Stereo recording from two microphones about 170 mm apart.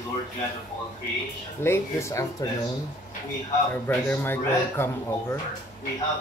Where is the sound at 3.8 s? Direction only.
10° left (ahead or behind).